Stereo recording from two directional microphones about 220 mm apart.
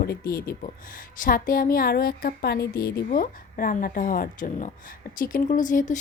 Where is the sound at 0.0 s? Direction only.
45° left (ahead or behind).